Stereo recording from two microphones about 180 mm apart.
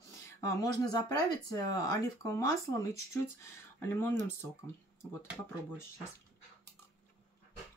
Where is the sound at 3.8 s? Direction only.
10° left (ahead or behind).